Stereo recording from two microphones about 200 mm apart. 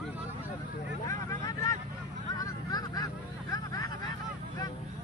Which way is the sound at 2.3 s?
20° left (ahead or behind).